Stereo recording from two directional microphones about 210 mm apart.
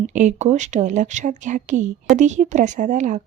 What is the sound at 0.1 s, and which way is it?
Speech, 35° right (ahead or behind).